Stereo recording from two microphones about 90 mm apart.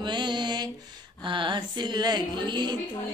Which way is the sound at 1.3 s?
65° right (ahead or behind).